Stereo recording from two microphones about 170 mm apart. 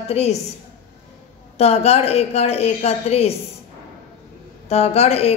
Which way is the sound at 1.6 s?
35° left (ahead or behind).